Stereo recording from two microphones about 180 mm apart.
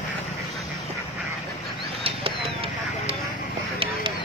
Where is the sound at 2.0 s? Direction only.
30° right (ahead or behind).